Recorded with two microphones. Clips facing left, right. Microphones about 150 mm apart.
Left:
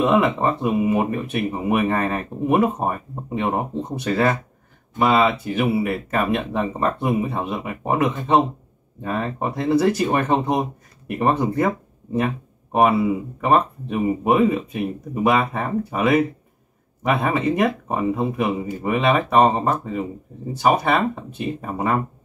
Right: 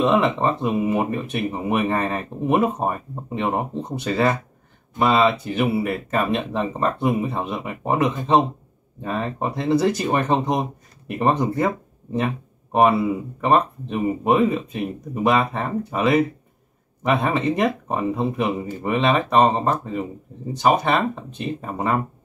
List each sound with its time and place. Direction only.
0.0 s speech: centre (ahead or behind)
4.0 s speech: 15° right (ahead or behind)
4.9 s speech: 5° left (ahead or behind)
13.4 s speech: 5° left (ahead or behind)